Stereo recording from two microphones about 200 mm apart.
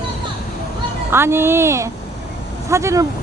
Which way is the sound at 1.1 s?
10° right (ahead or behind).